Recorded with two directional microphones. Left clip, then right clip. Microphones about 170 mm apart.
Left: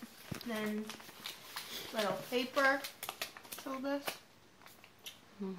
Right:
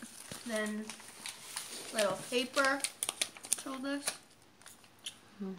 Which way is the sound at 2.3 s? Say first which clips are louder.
Left 1 dB; 20° left (ahead or behind).